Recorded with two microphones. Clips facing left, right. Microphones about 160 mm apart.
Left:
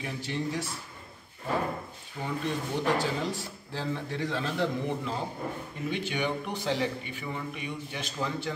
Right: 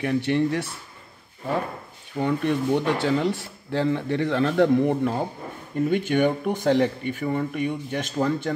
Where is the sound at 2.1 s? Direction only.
60° right (ahead or behind).